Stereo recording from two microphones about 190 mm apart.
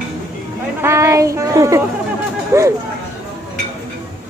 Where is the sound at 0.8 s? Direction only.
15° right (ahead or behind).